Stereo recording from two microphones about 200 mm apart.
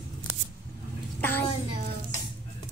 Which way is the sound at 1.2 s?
10° left (ahead or behind).